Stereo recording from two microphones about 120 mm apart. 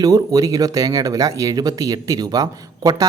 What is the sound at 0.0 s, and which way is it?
Speech, 30° right (ahead or behind).